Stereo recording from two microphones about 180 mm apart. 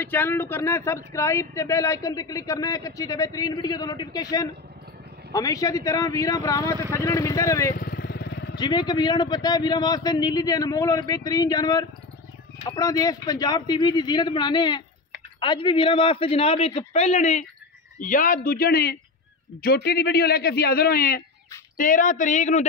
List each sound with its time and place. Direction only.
0.0 s a man's voice: 10° left (ahead or behind)
7.7 s vehicle: 55° left (ahead or behind)
8.5 s a man's voice: 25° left (ahead or behind); by 22.7 s 40° left (ahead or behind)